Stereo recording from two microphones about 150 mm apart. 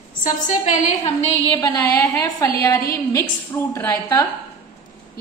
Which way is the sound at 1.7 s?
15° left (ahead or behind).